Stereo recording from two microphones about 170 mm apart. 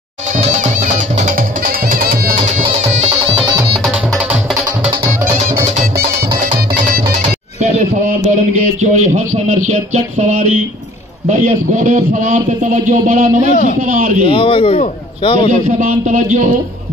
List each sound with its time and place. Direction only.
0.4 s music: 45° right (ahead or behind)
2.3 s music: 40° right (ahead or behind)
3.7 s music: centre (ahead or behind)
7.2 s music: 40° right (ahead or behind)
8.1 s a man's voice: 50° right (ahead or behind)
14.2 s a man's voice: 30° left (ahead or behind)
15.8 s a man's voice: 50° right (ahead or behind)